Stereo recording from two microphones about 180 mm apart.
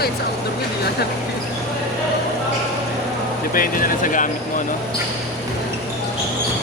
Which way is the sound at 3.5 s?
50° left (ahead or behind).